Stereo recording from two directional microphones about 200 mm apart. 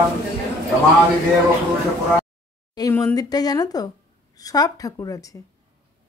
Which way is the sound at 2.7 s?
20° left (ahead or behind).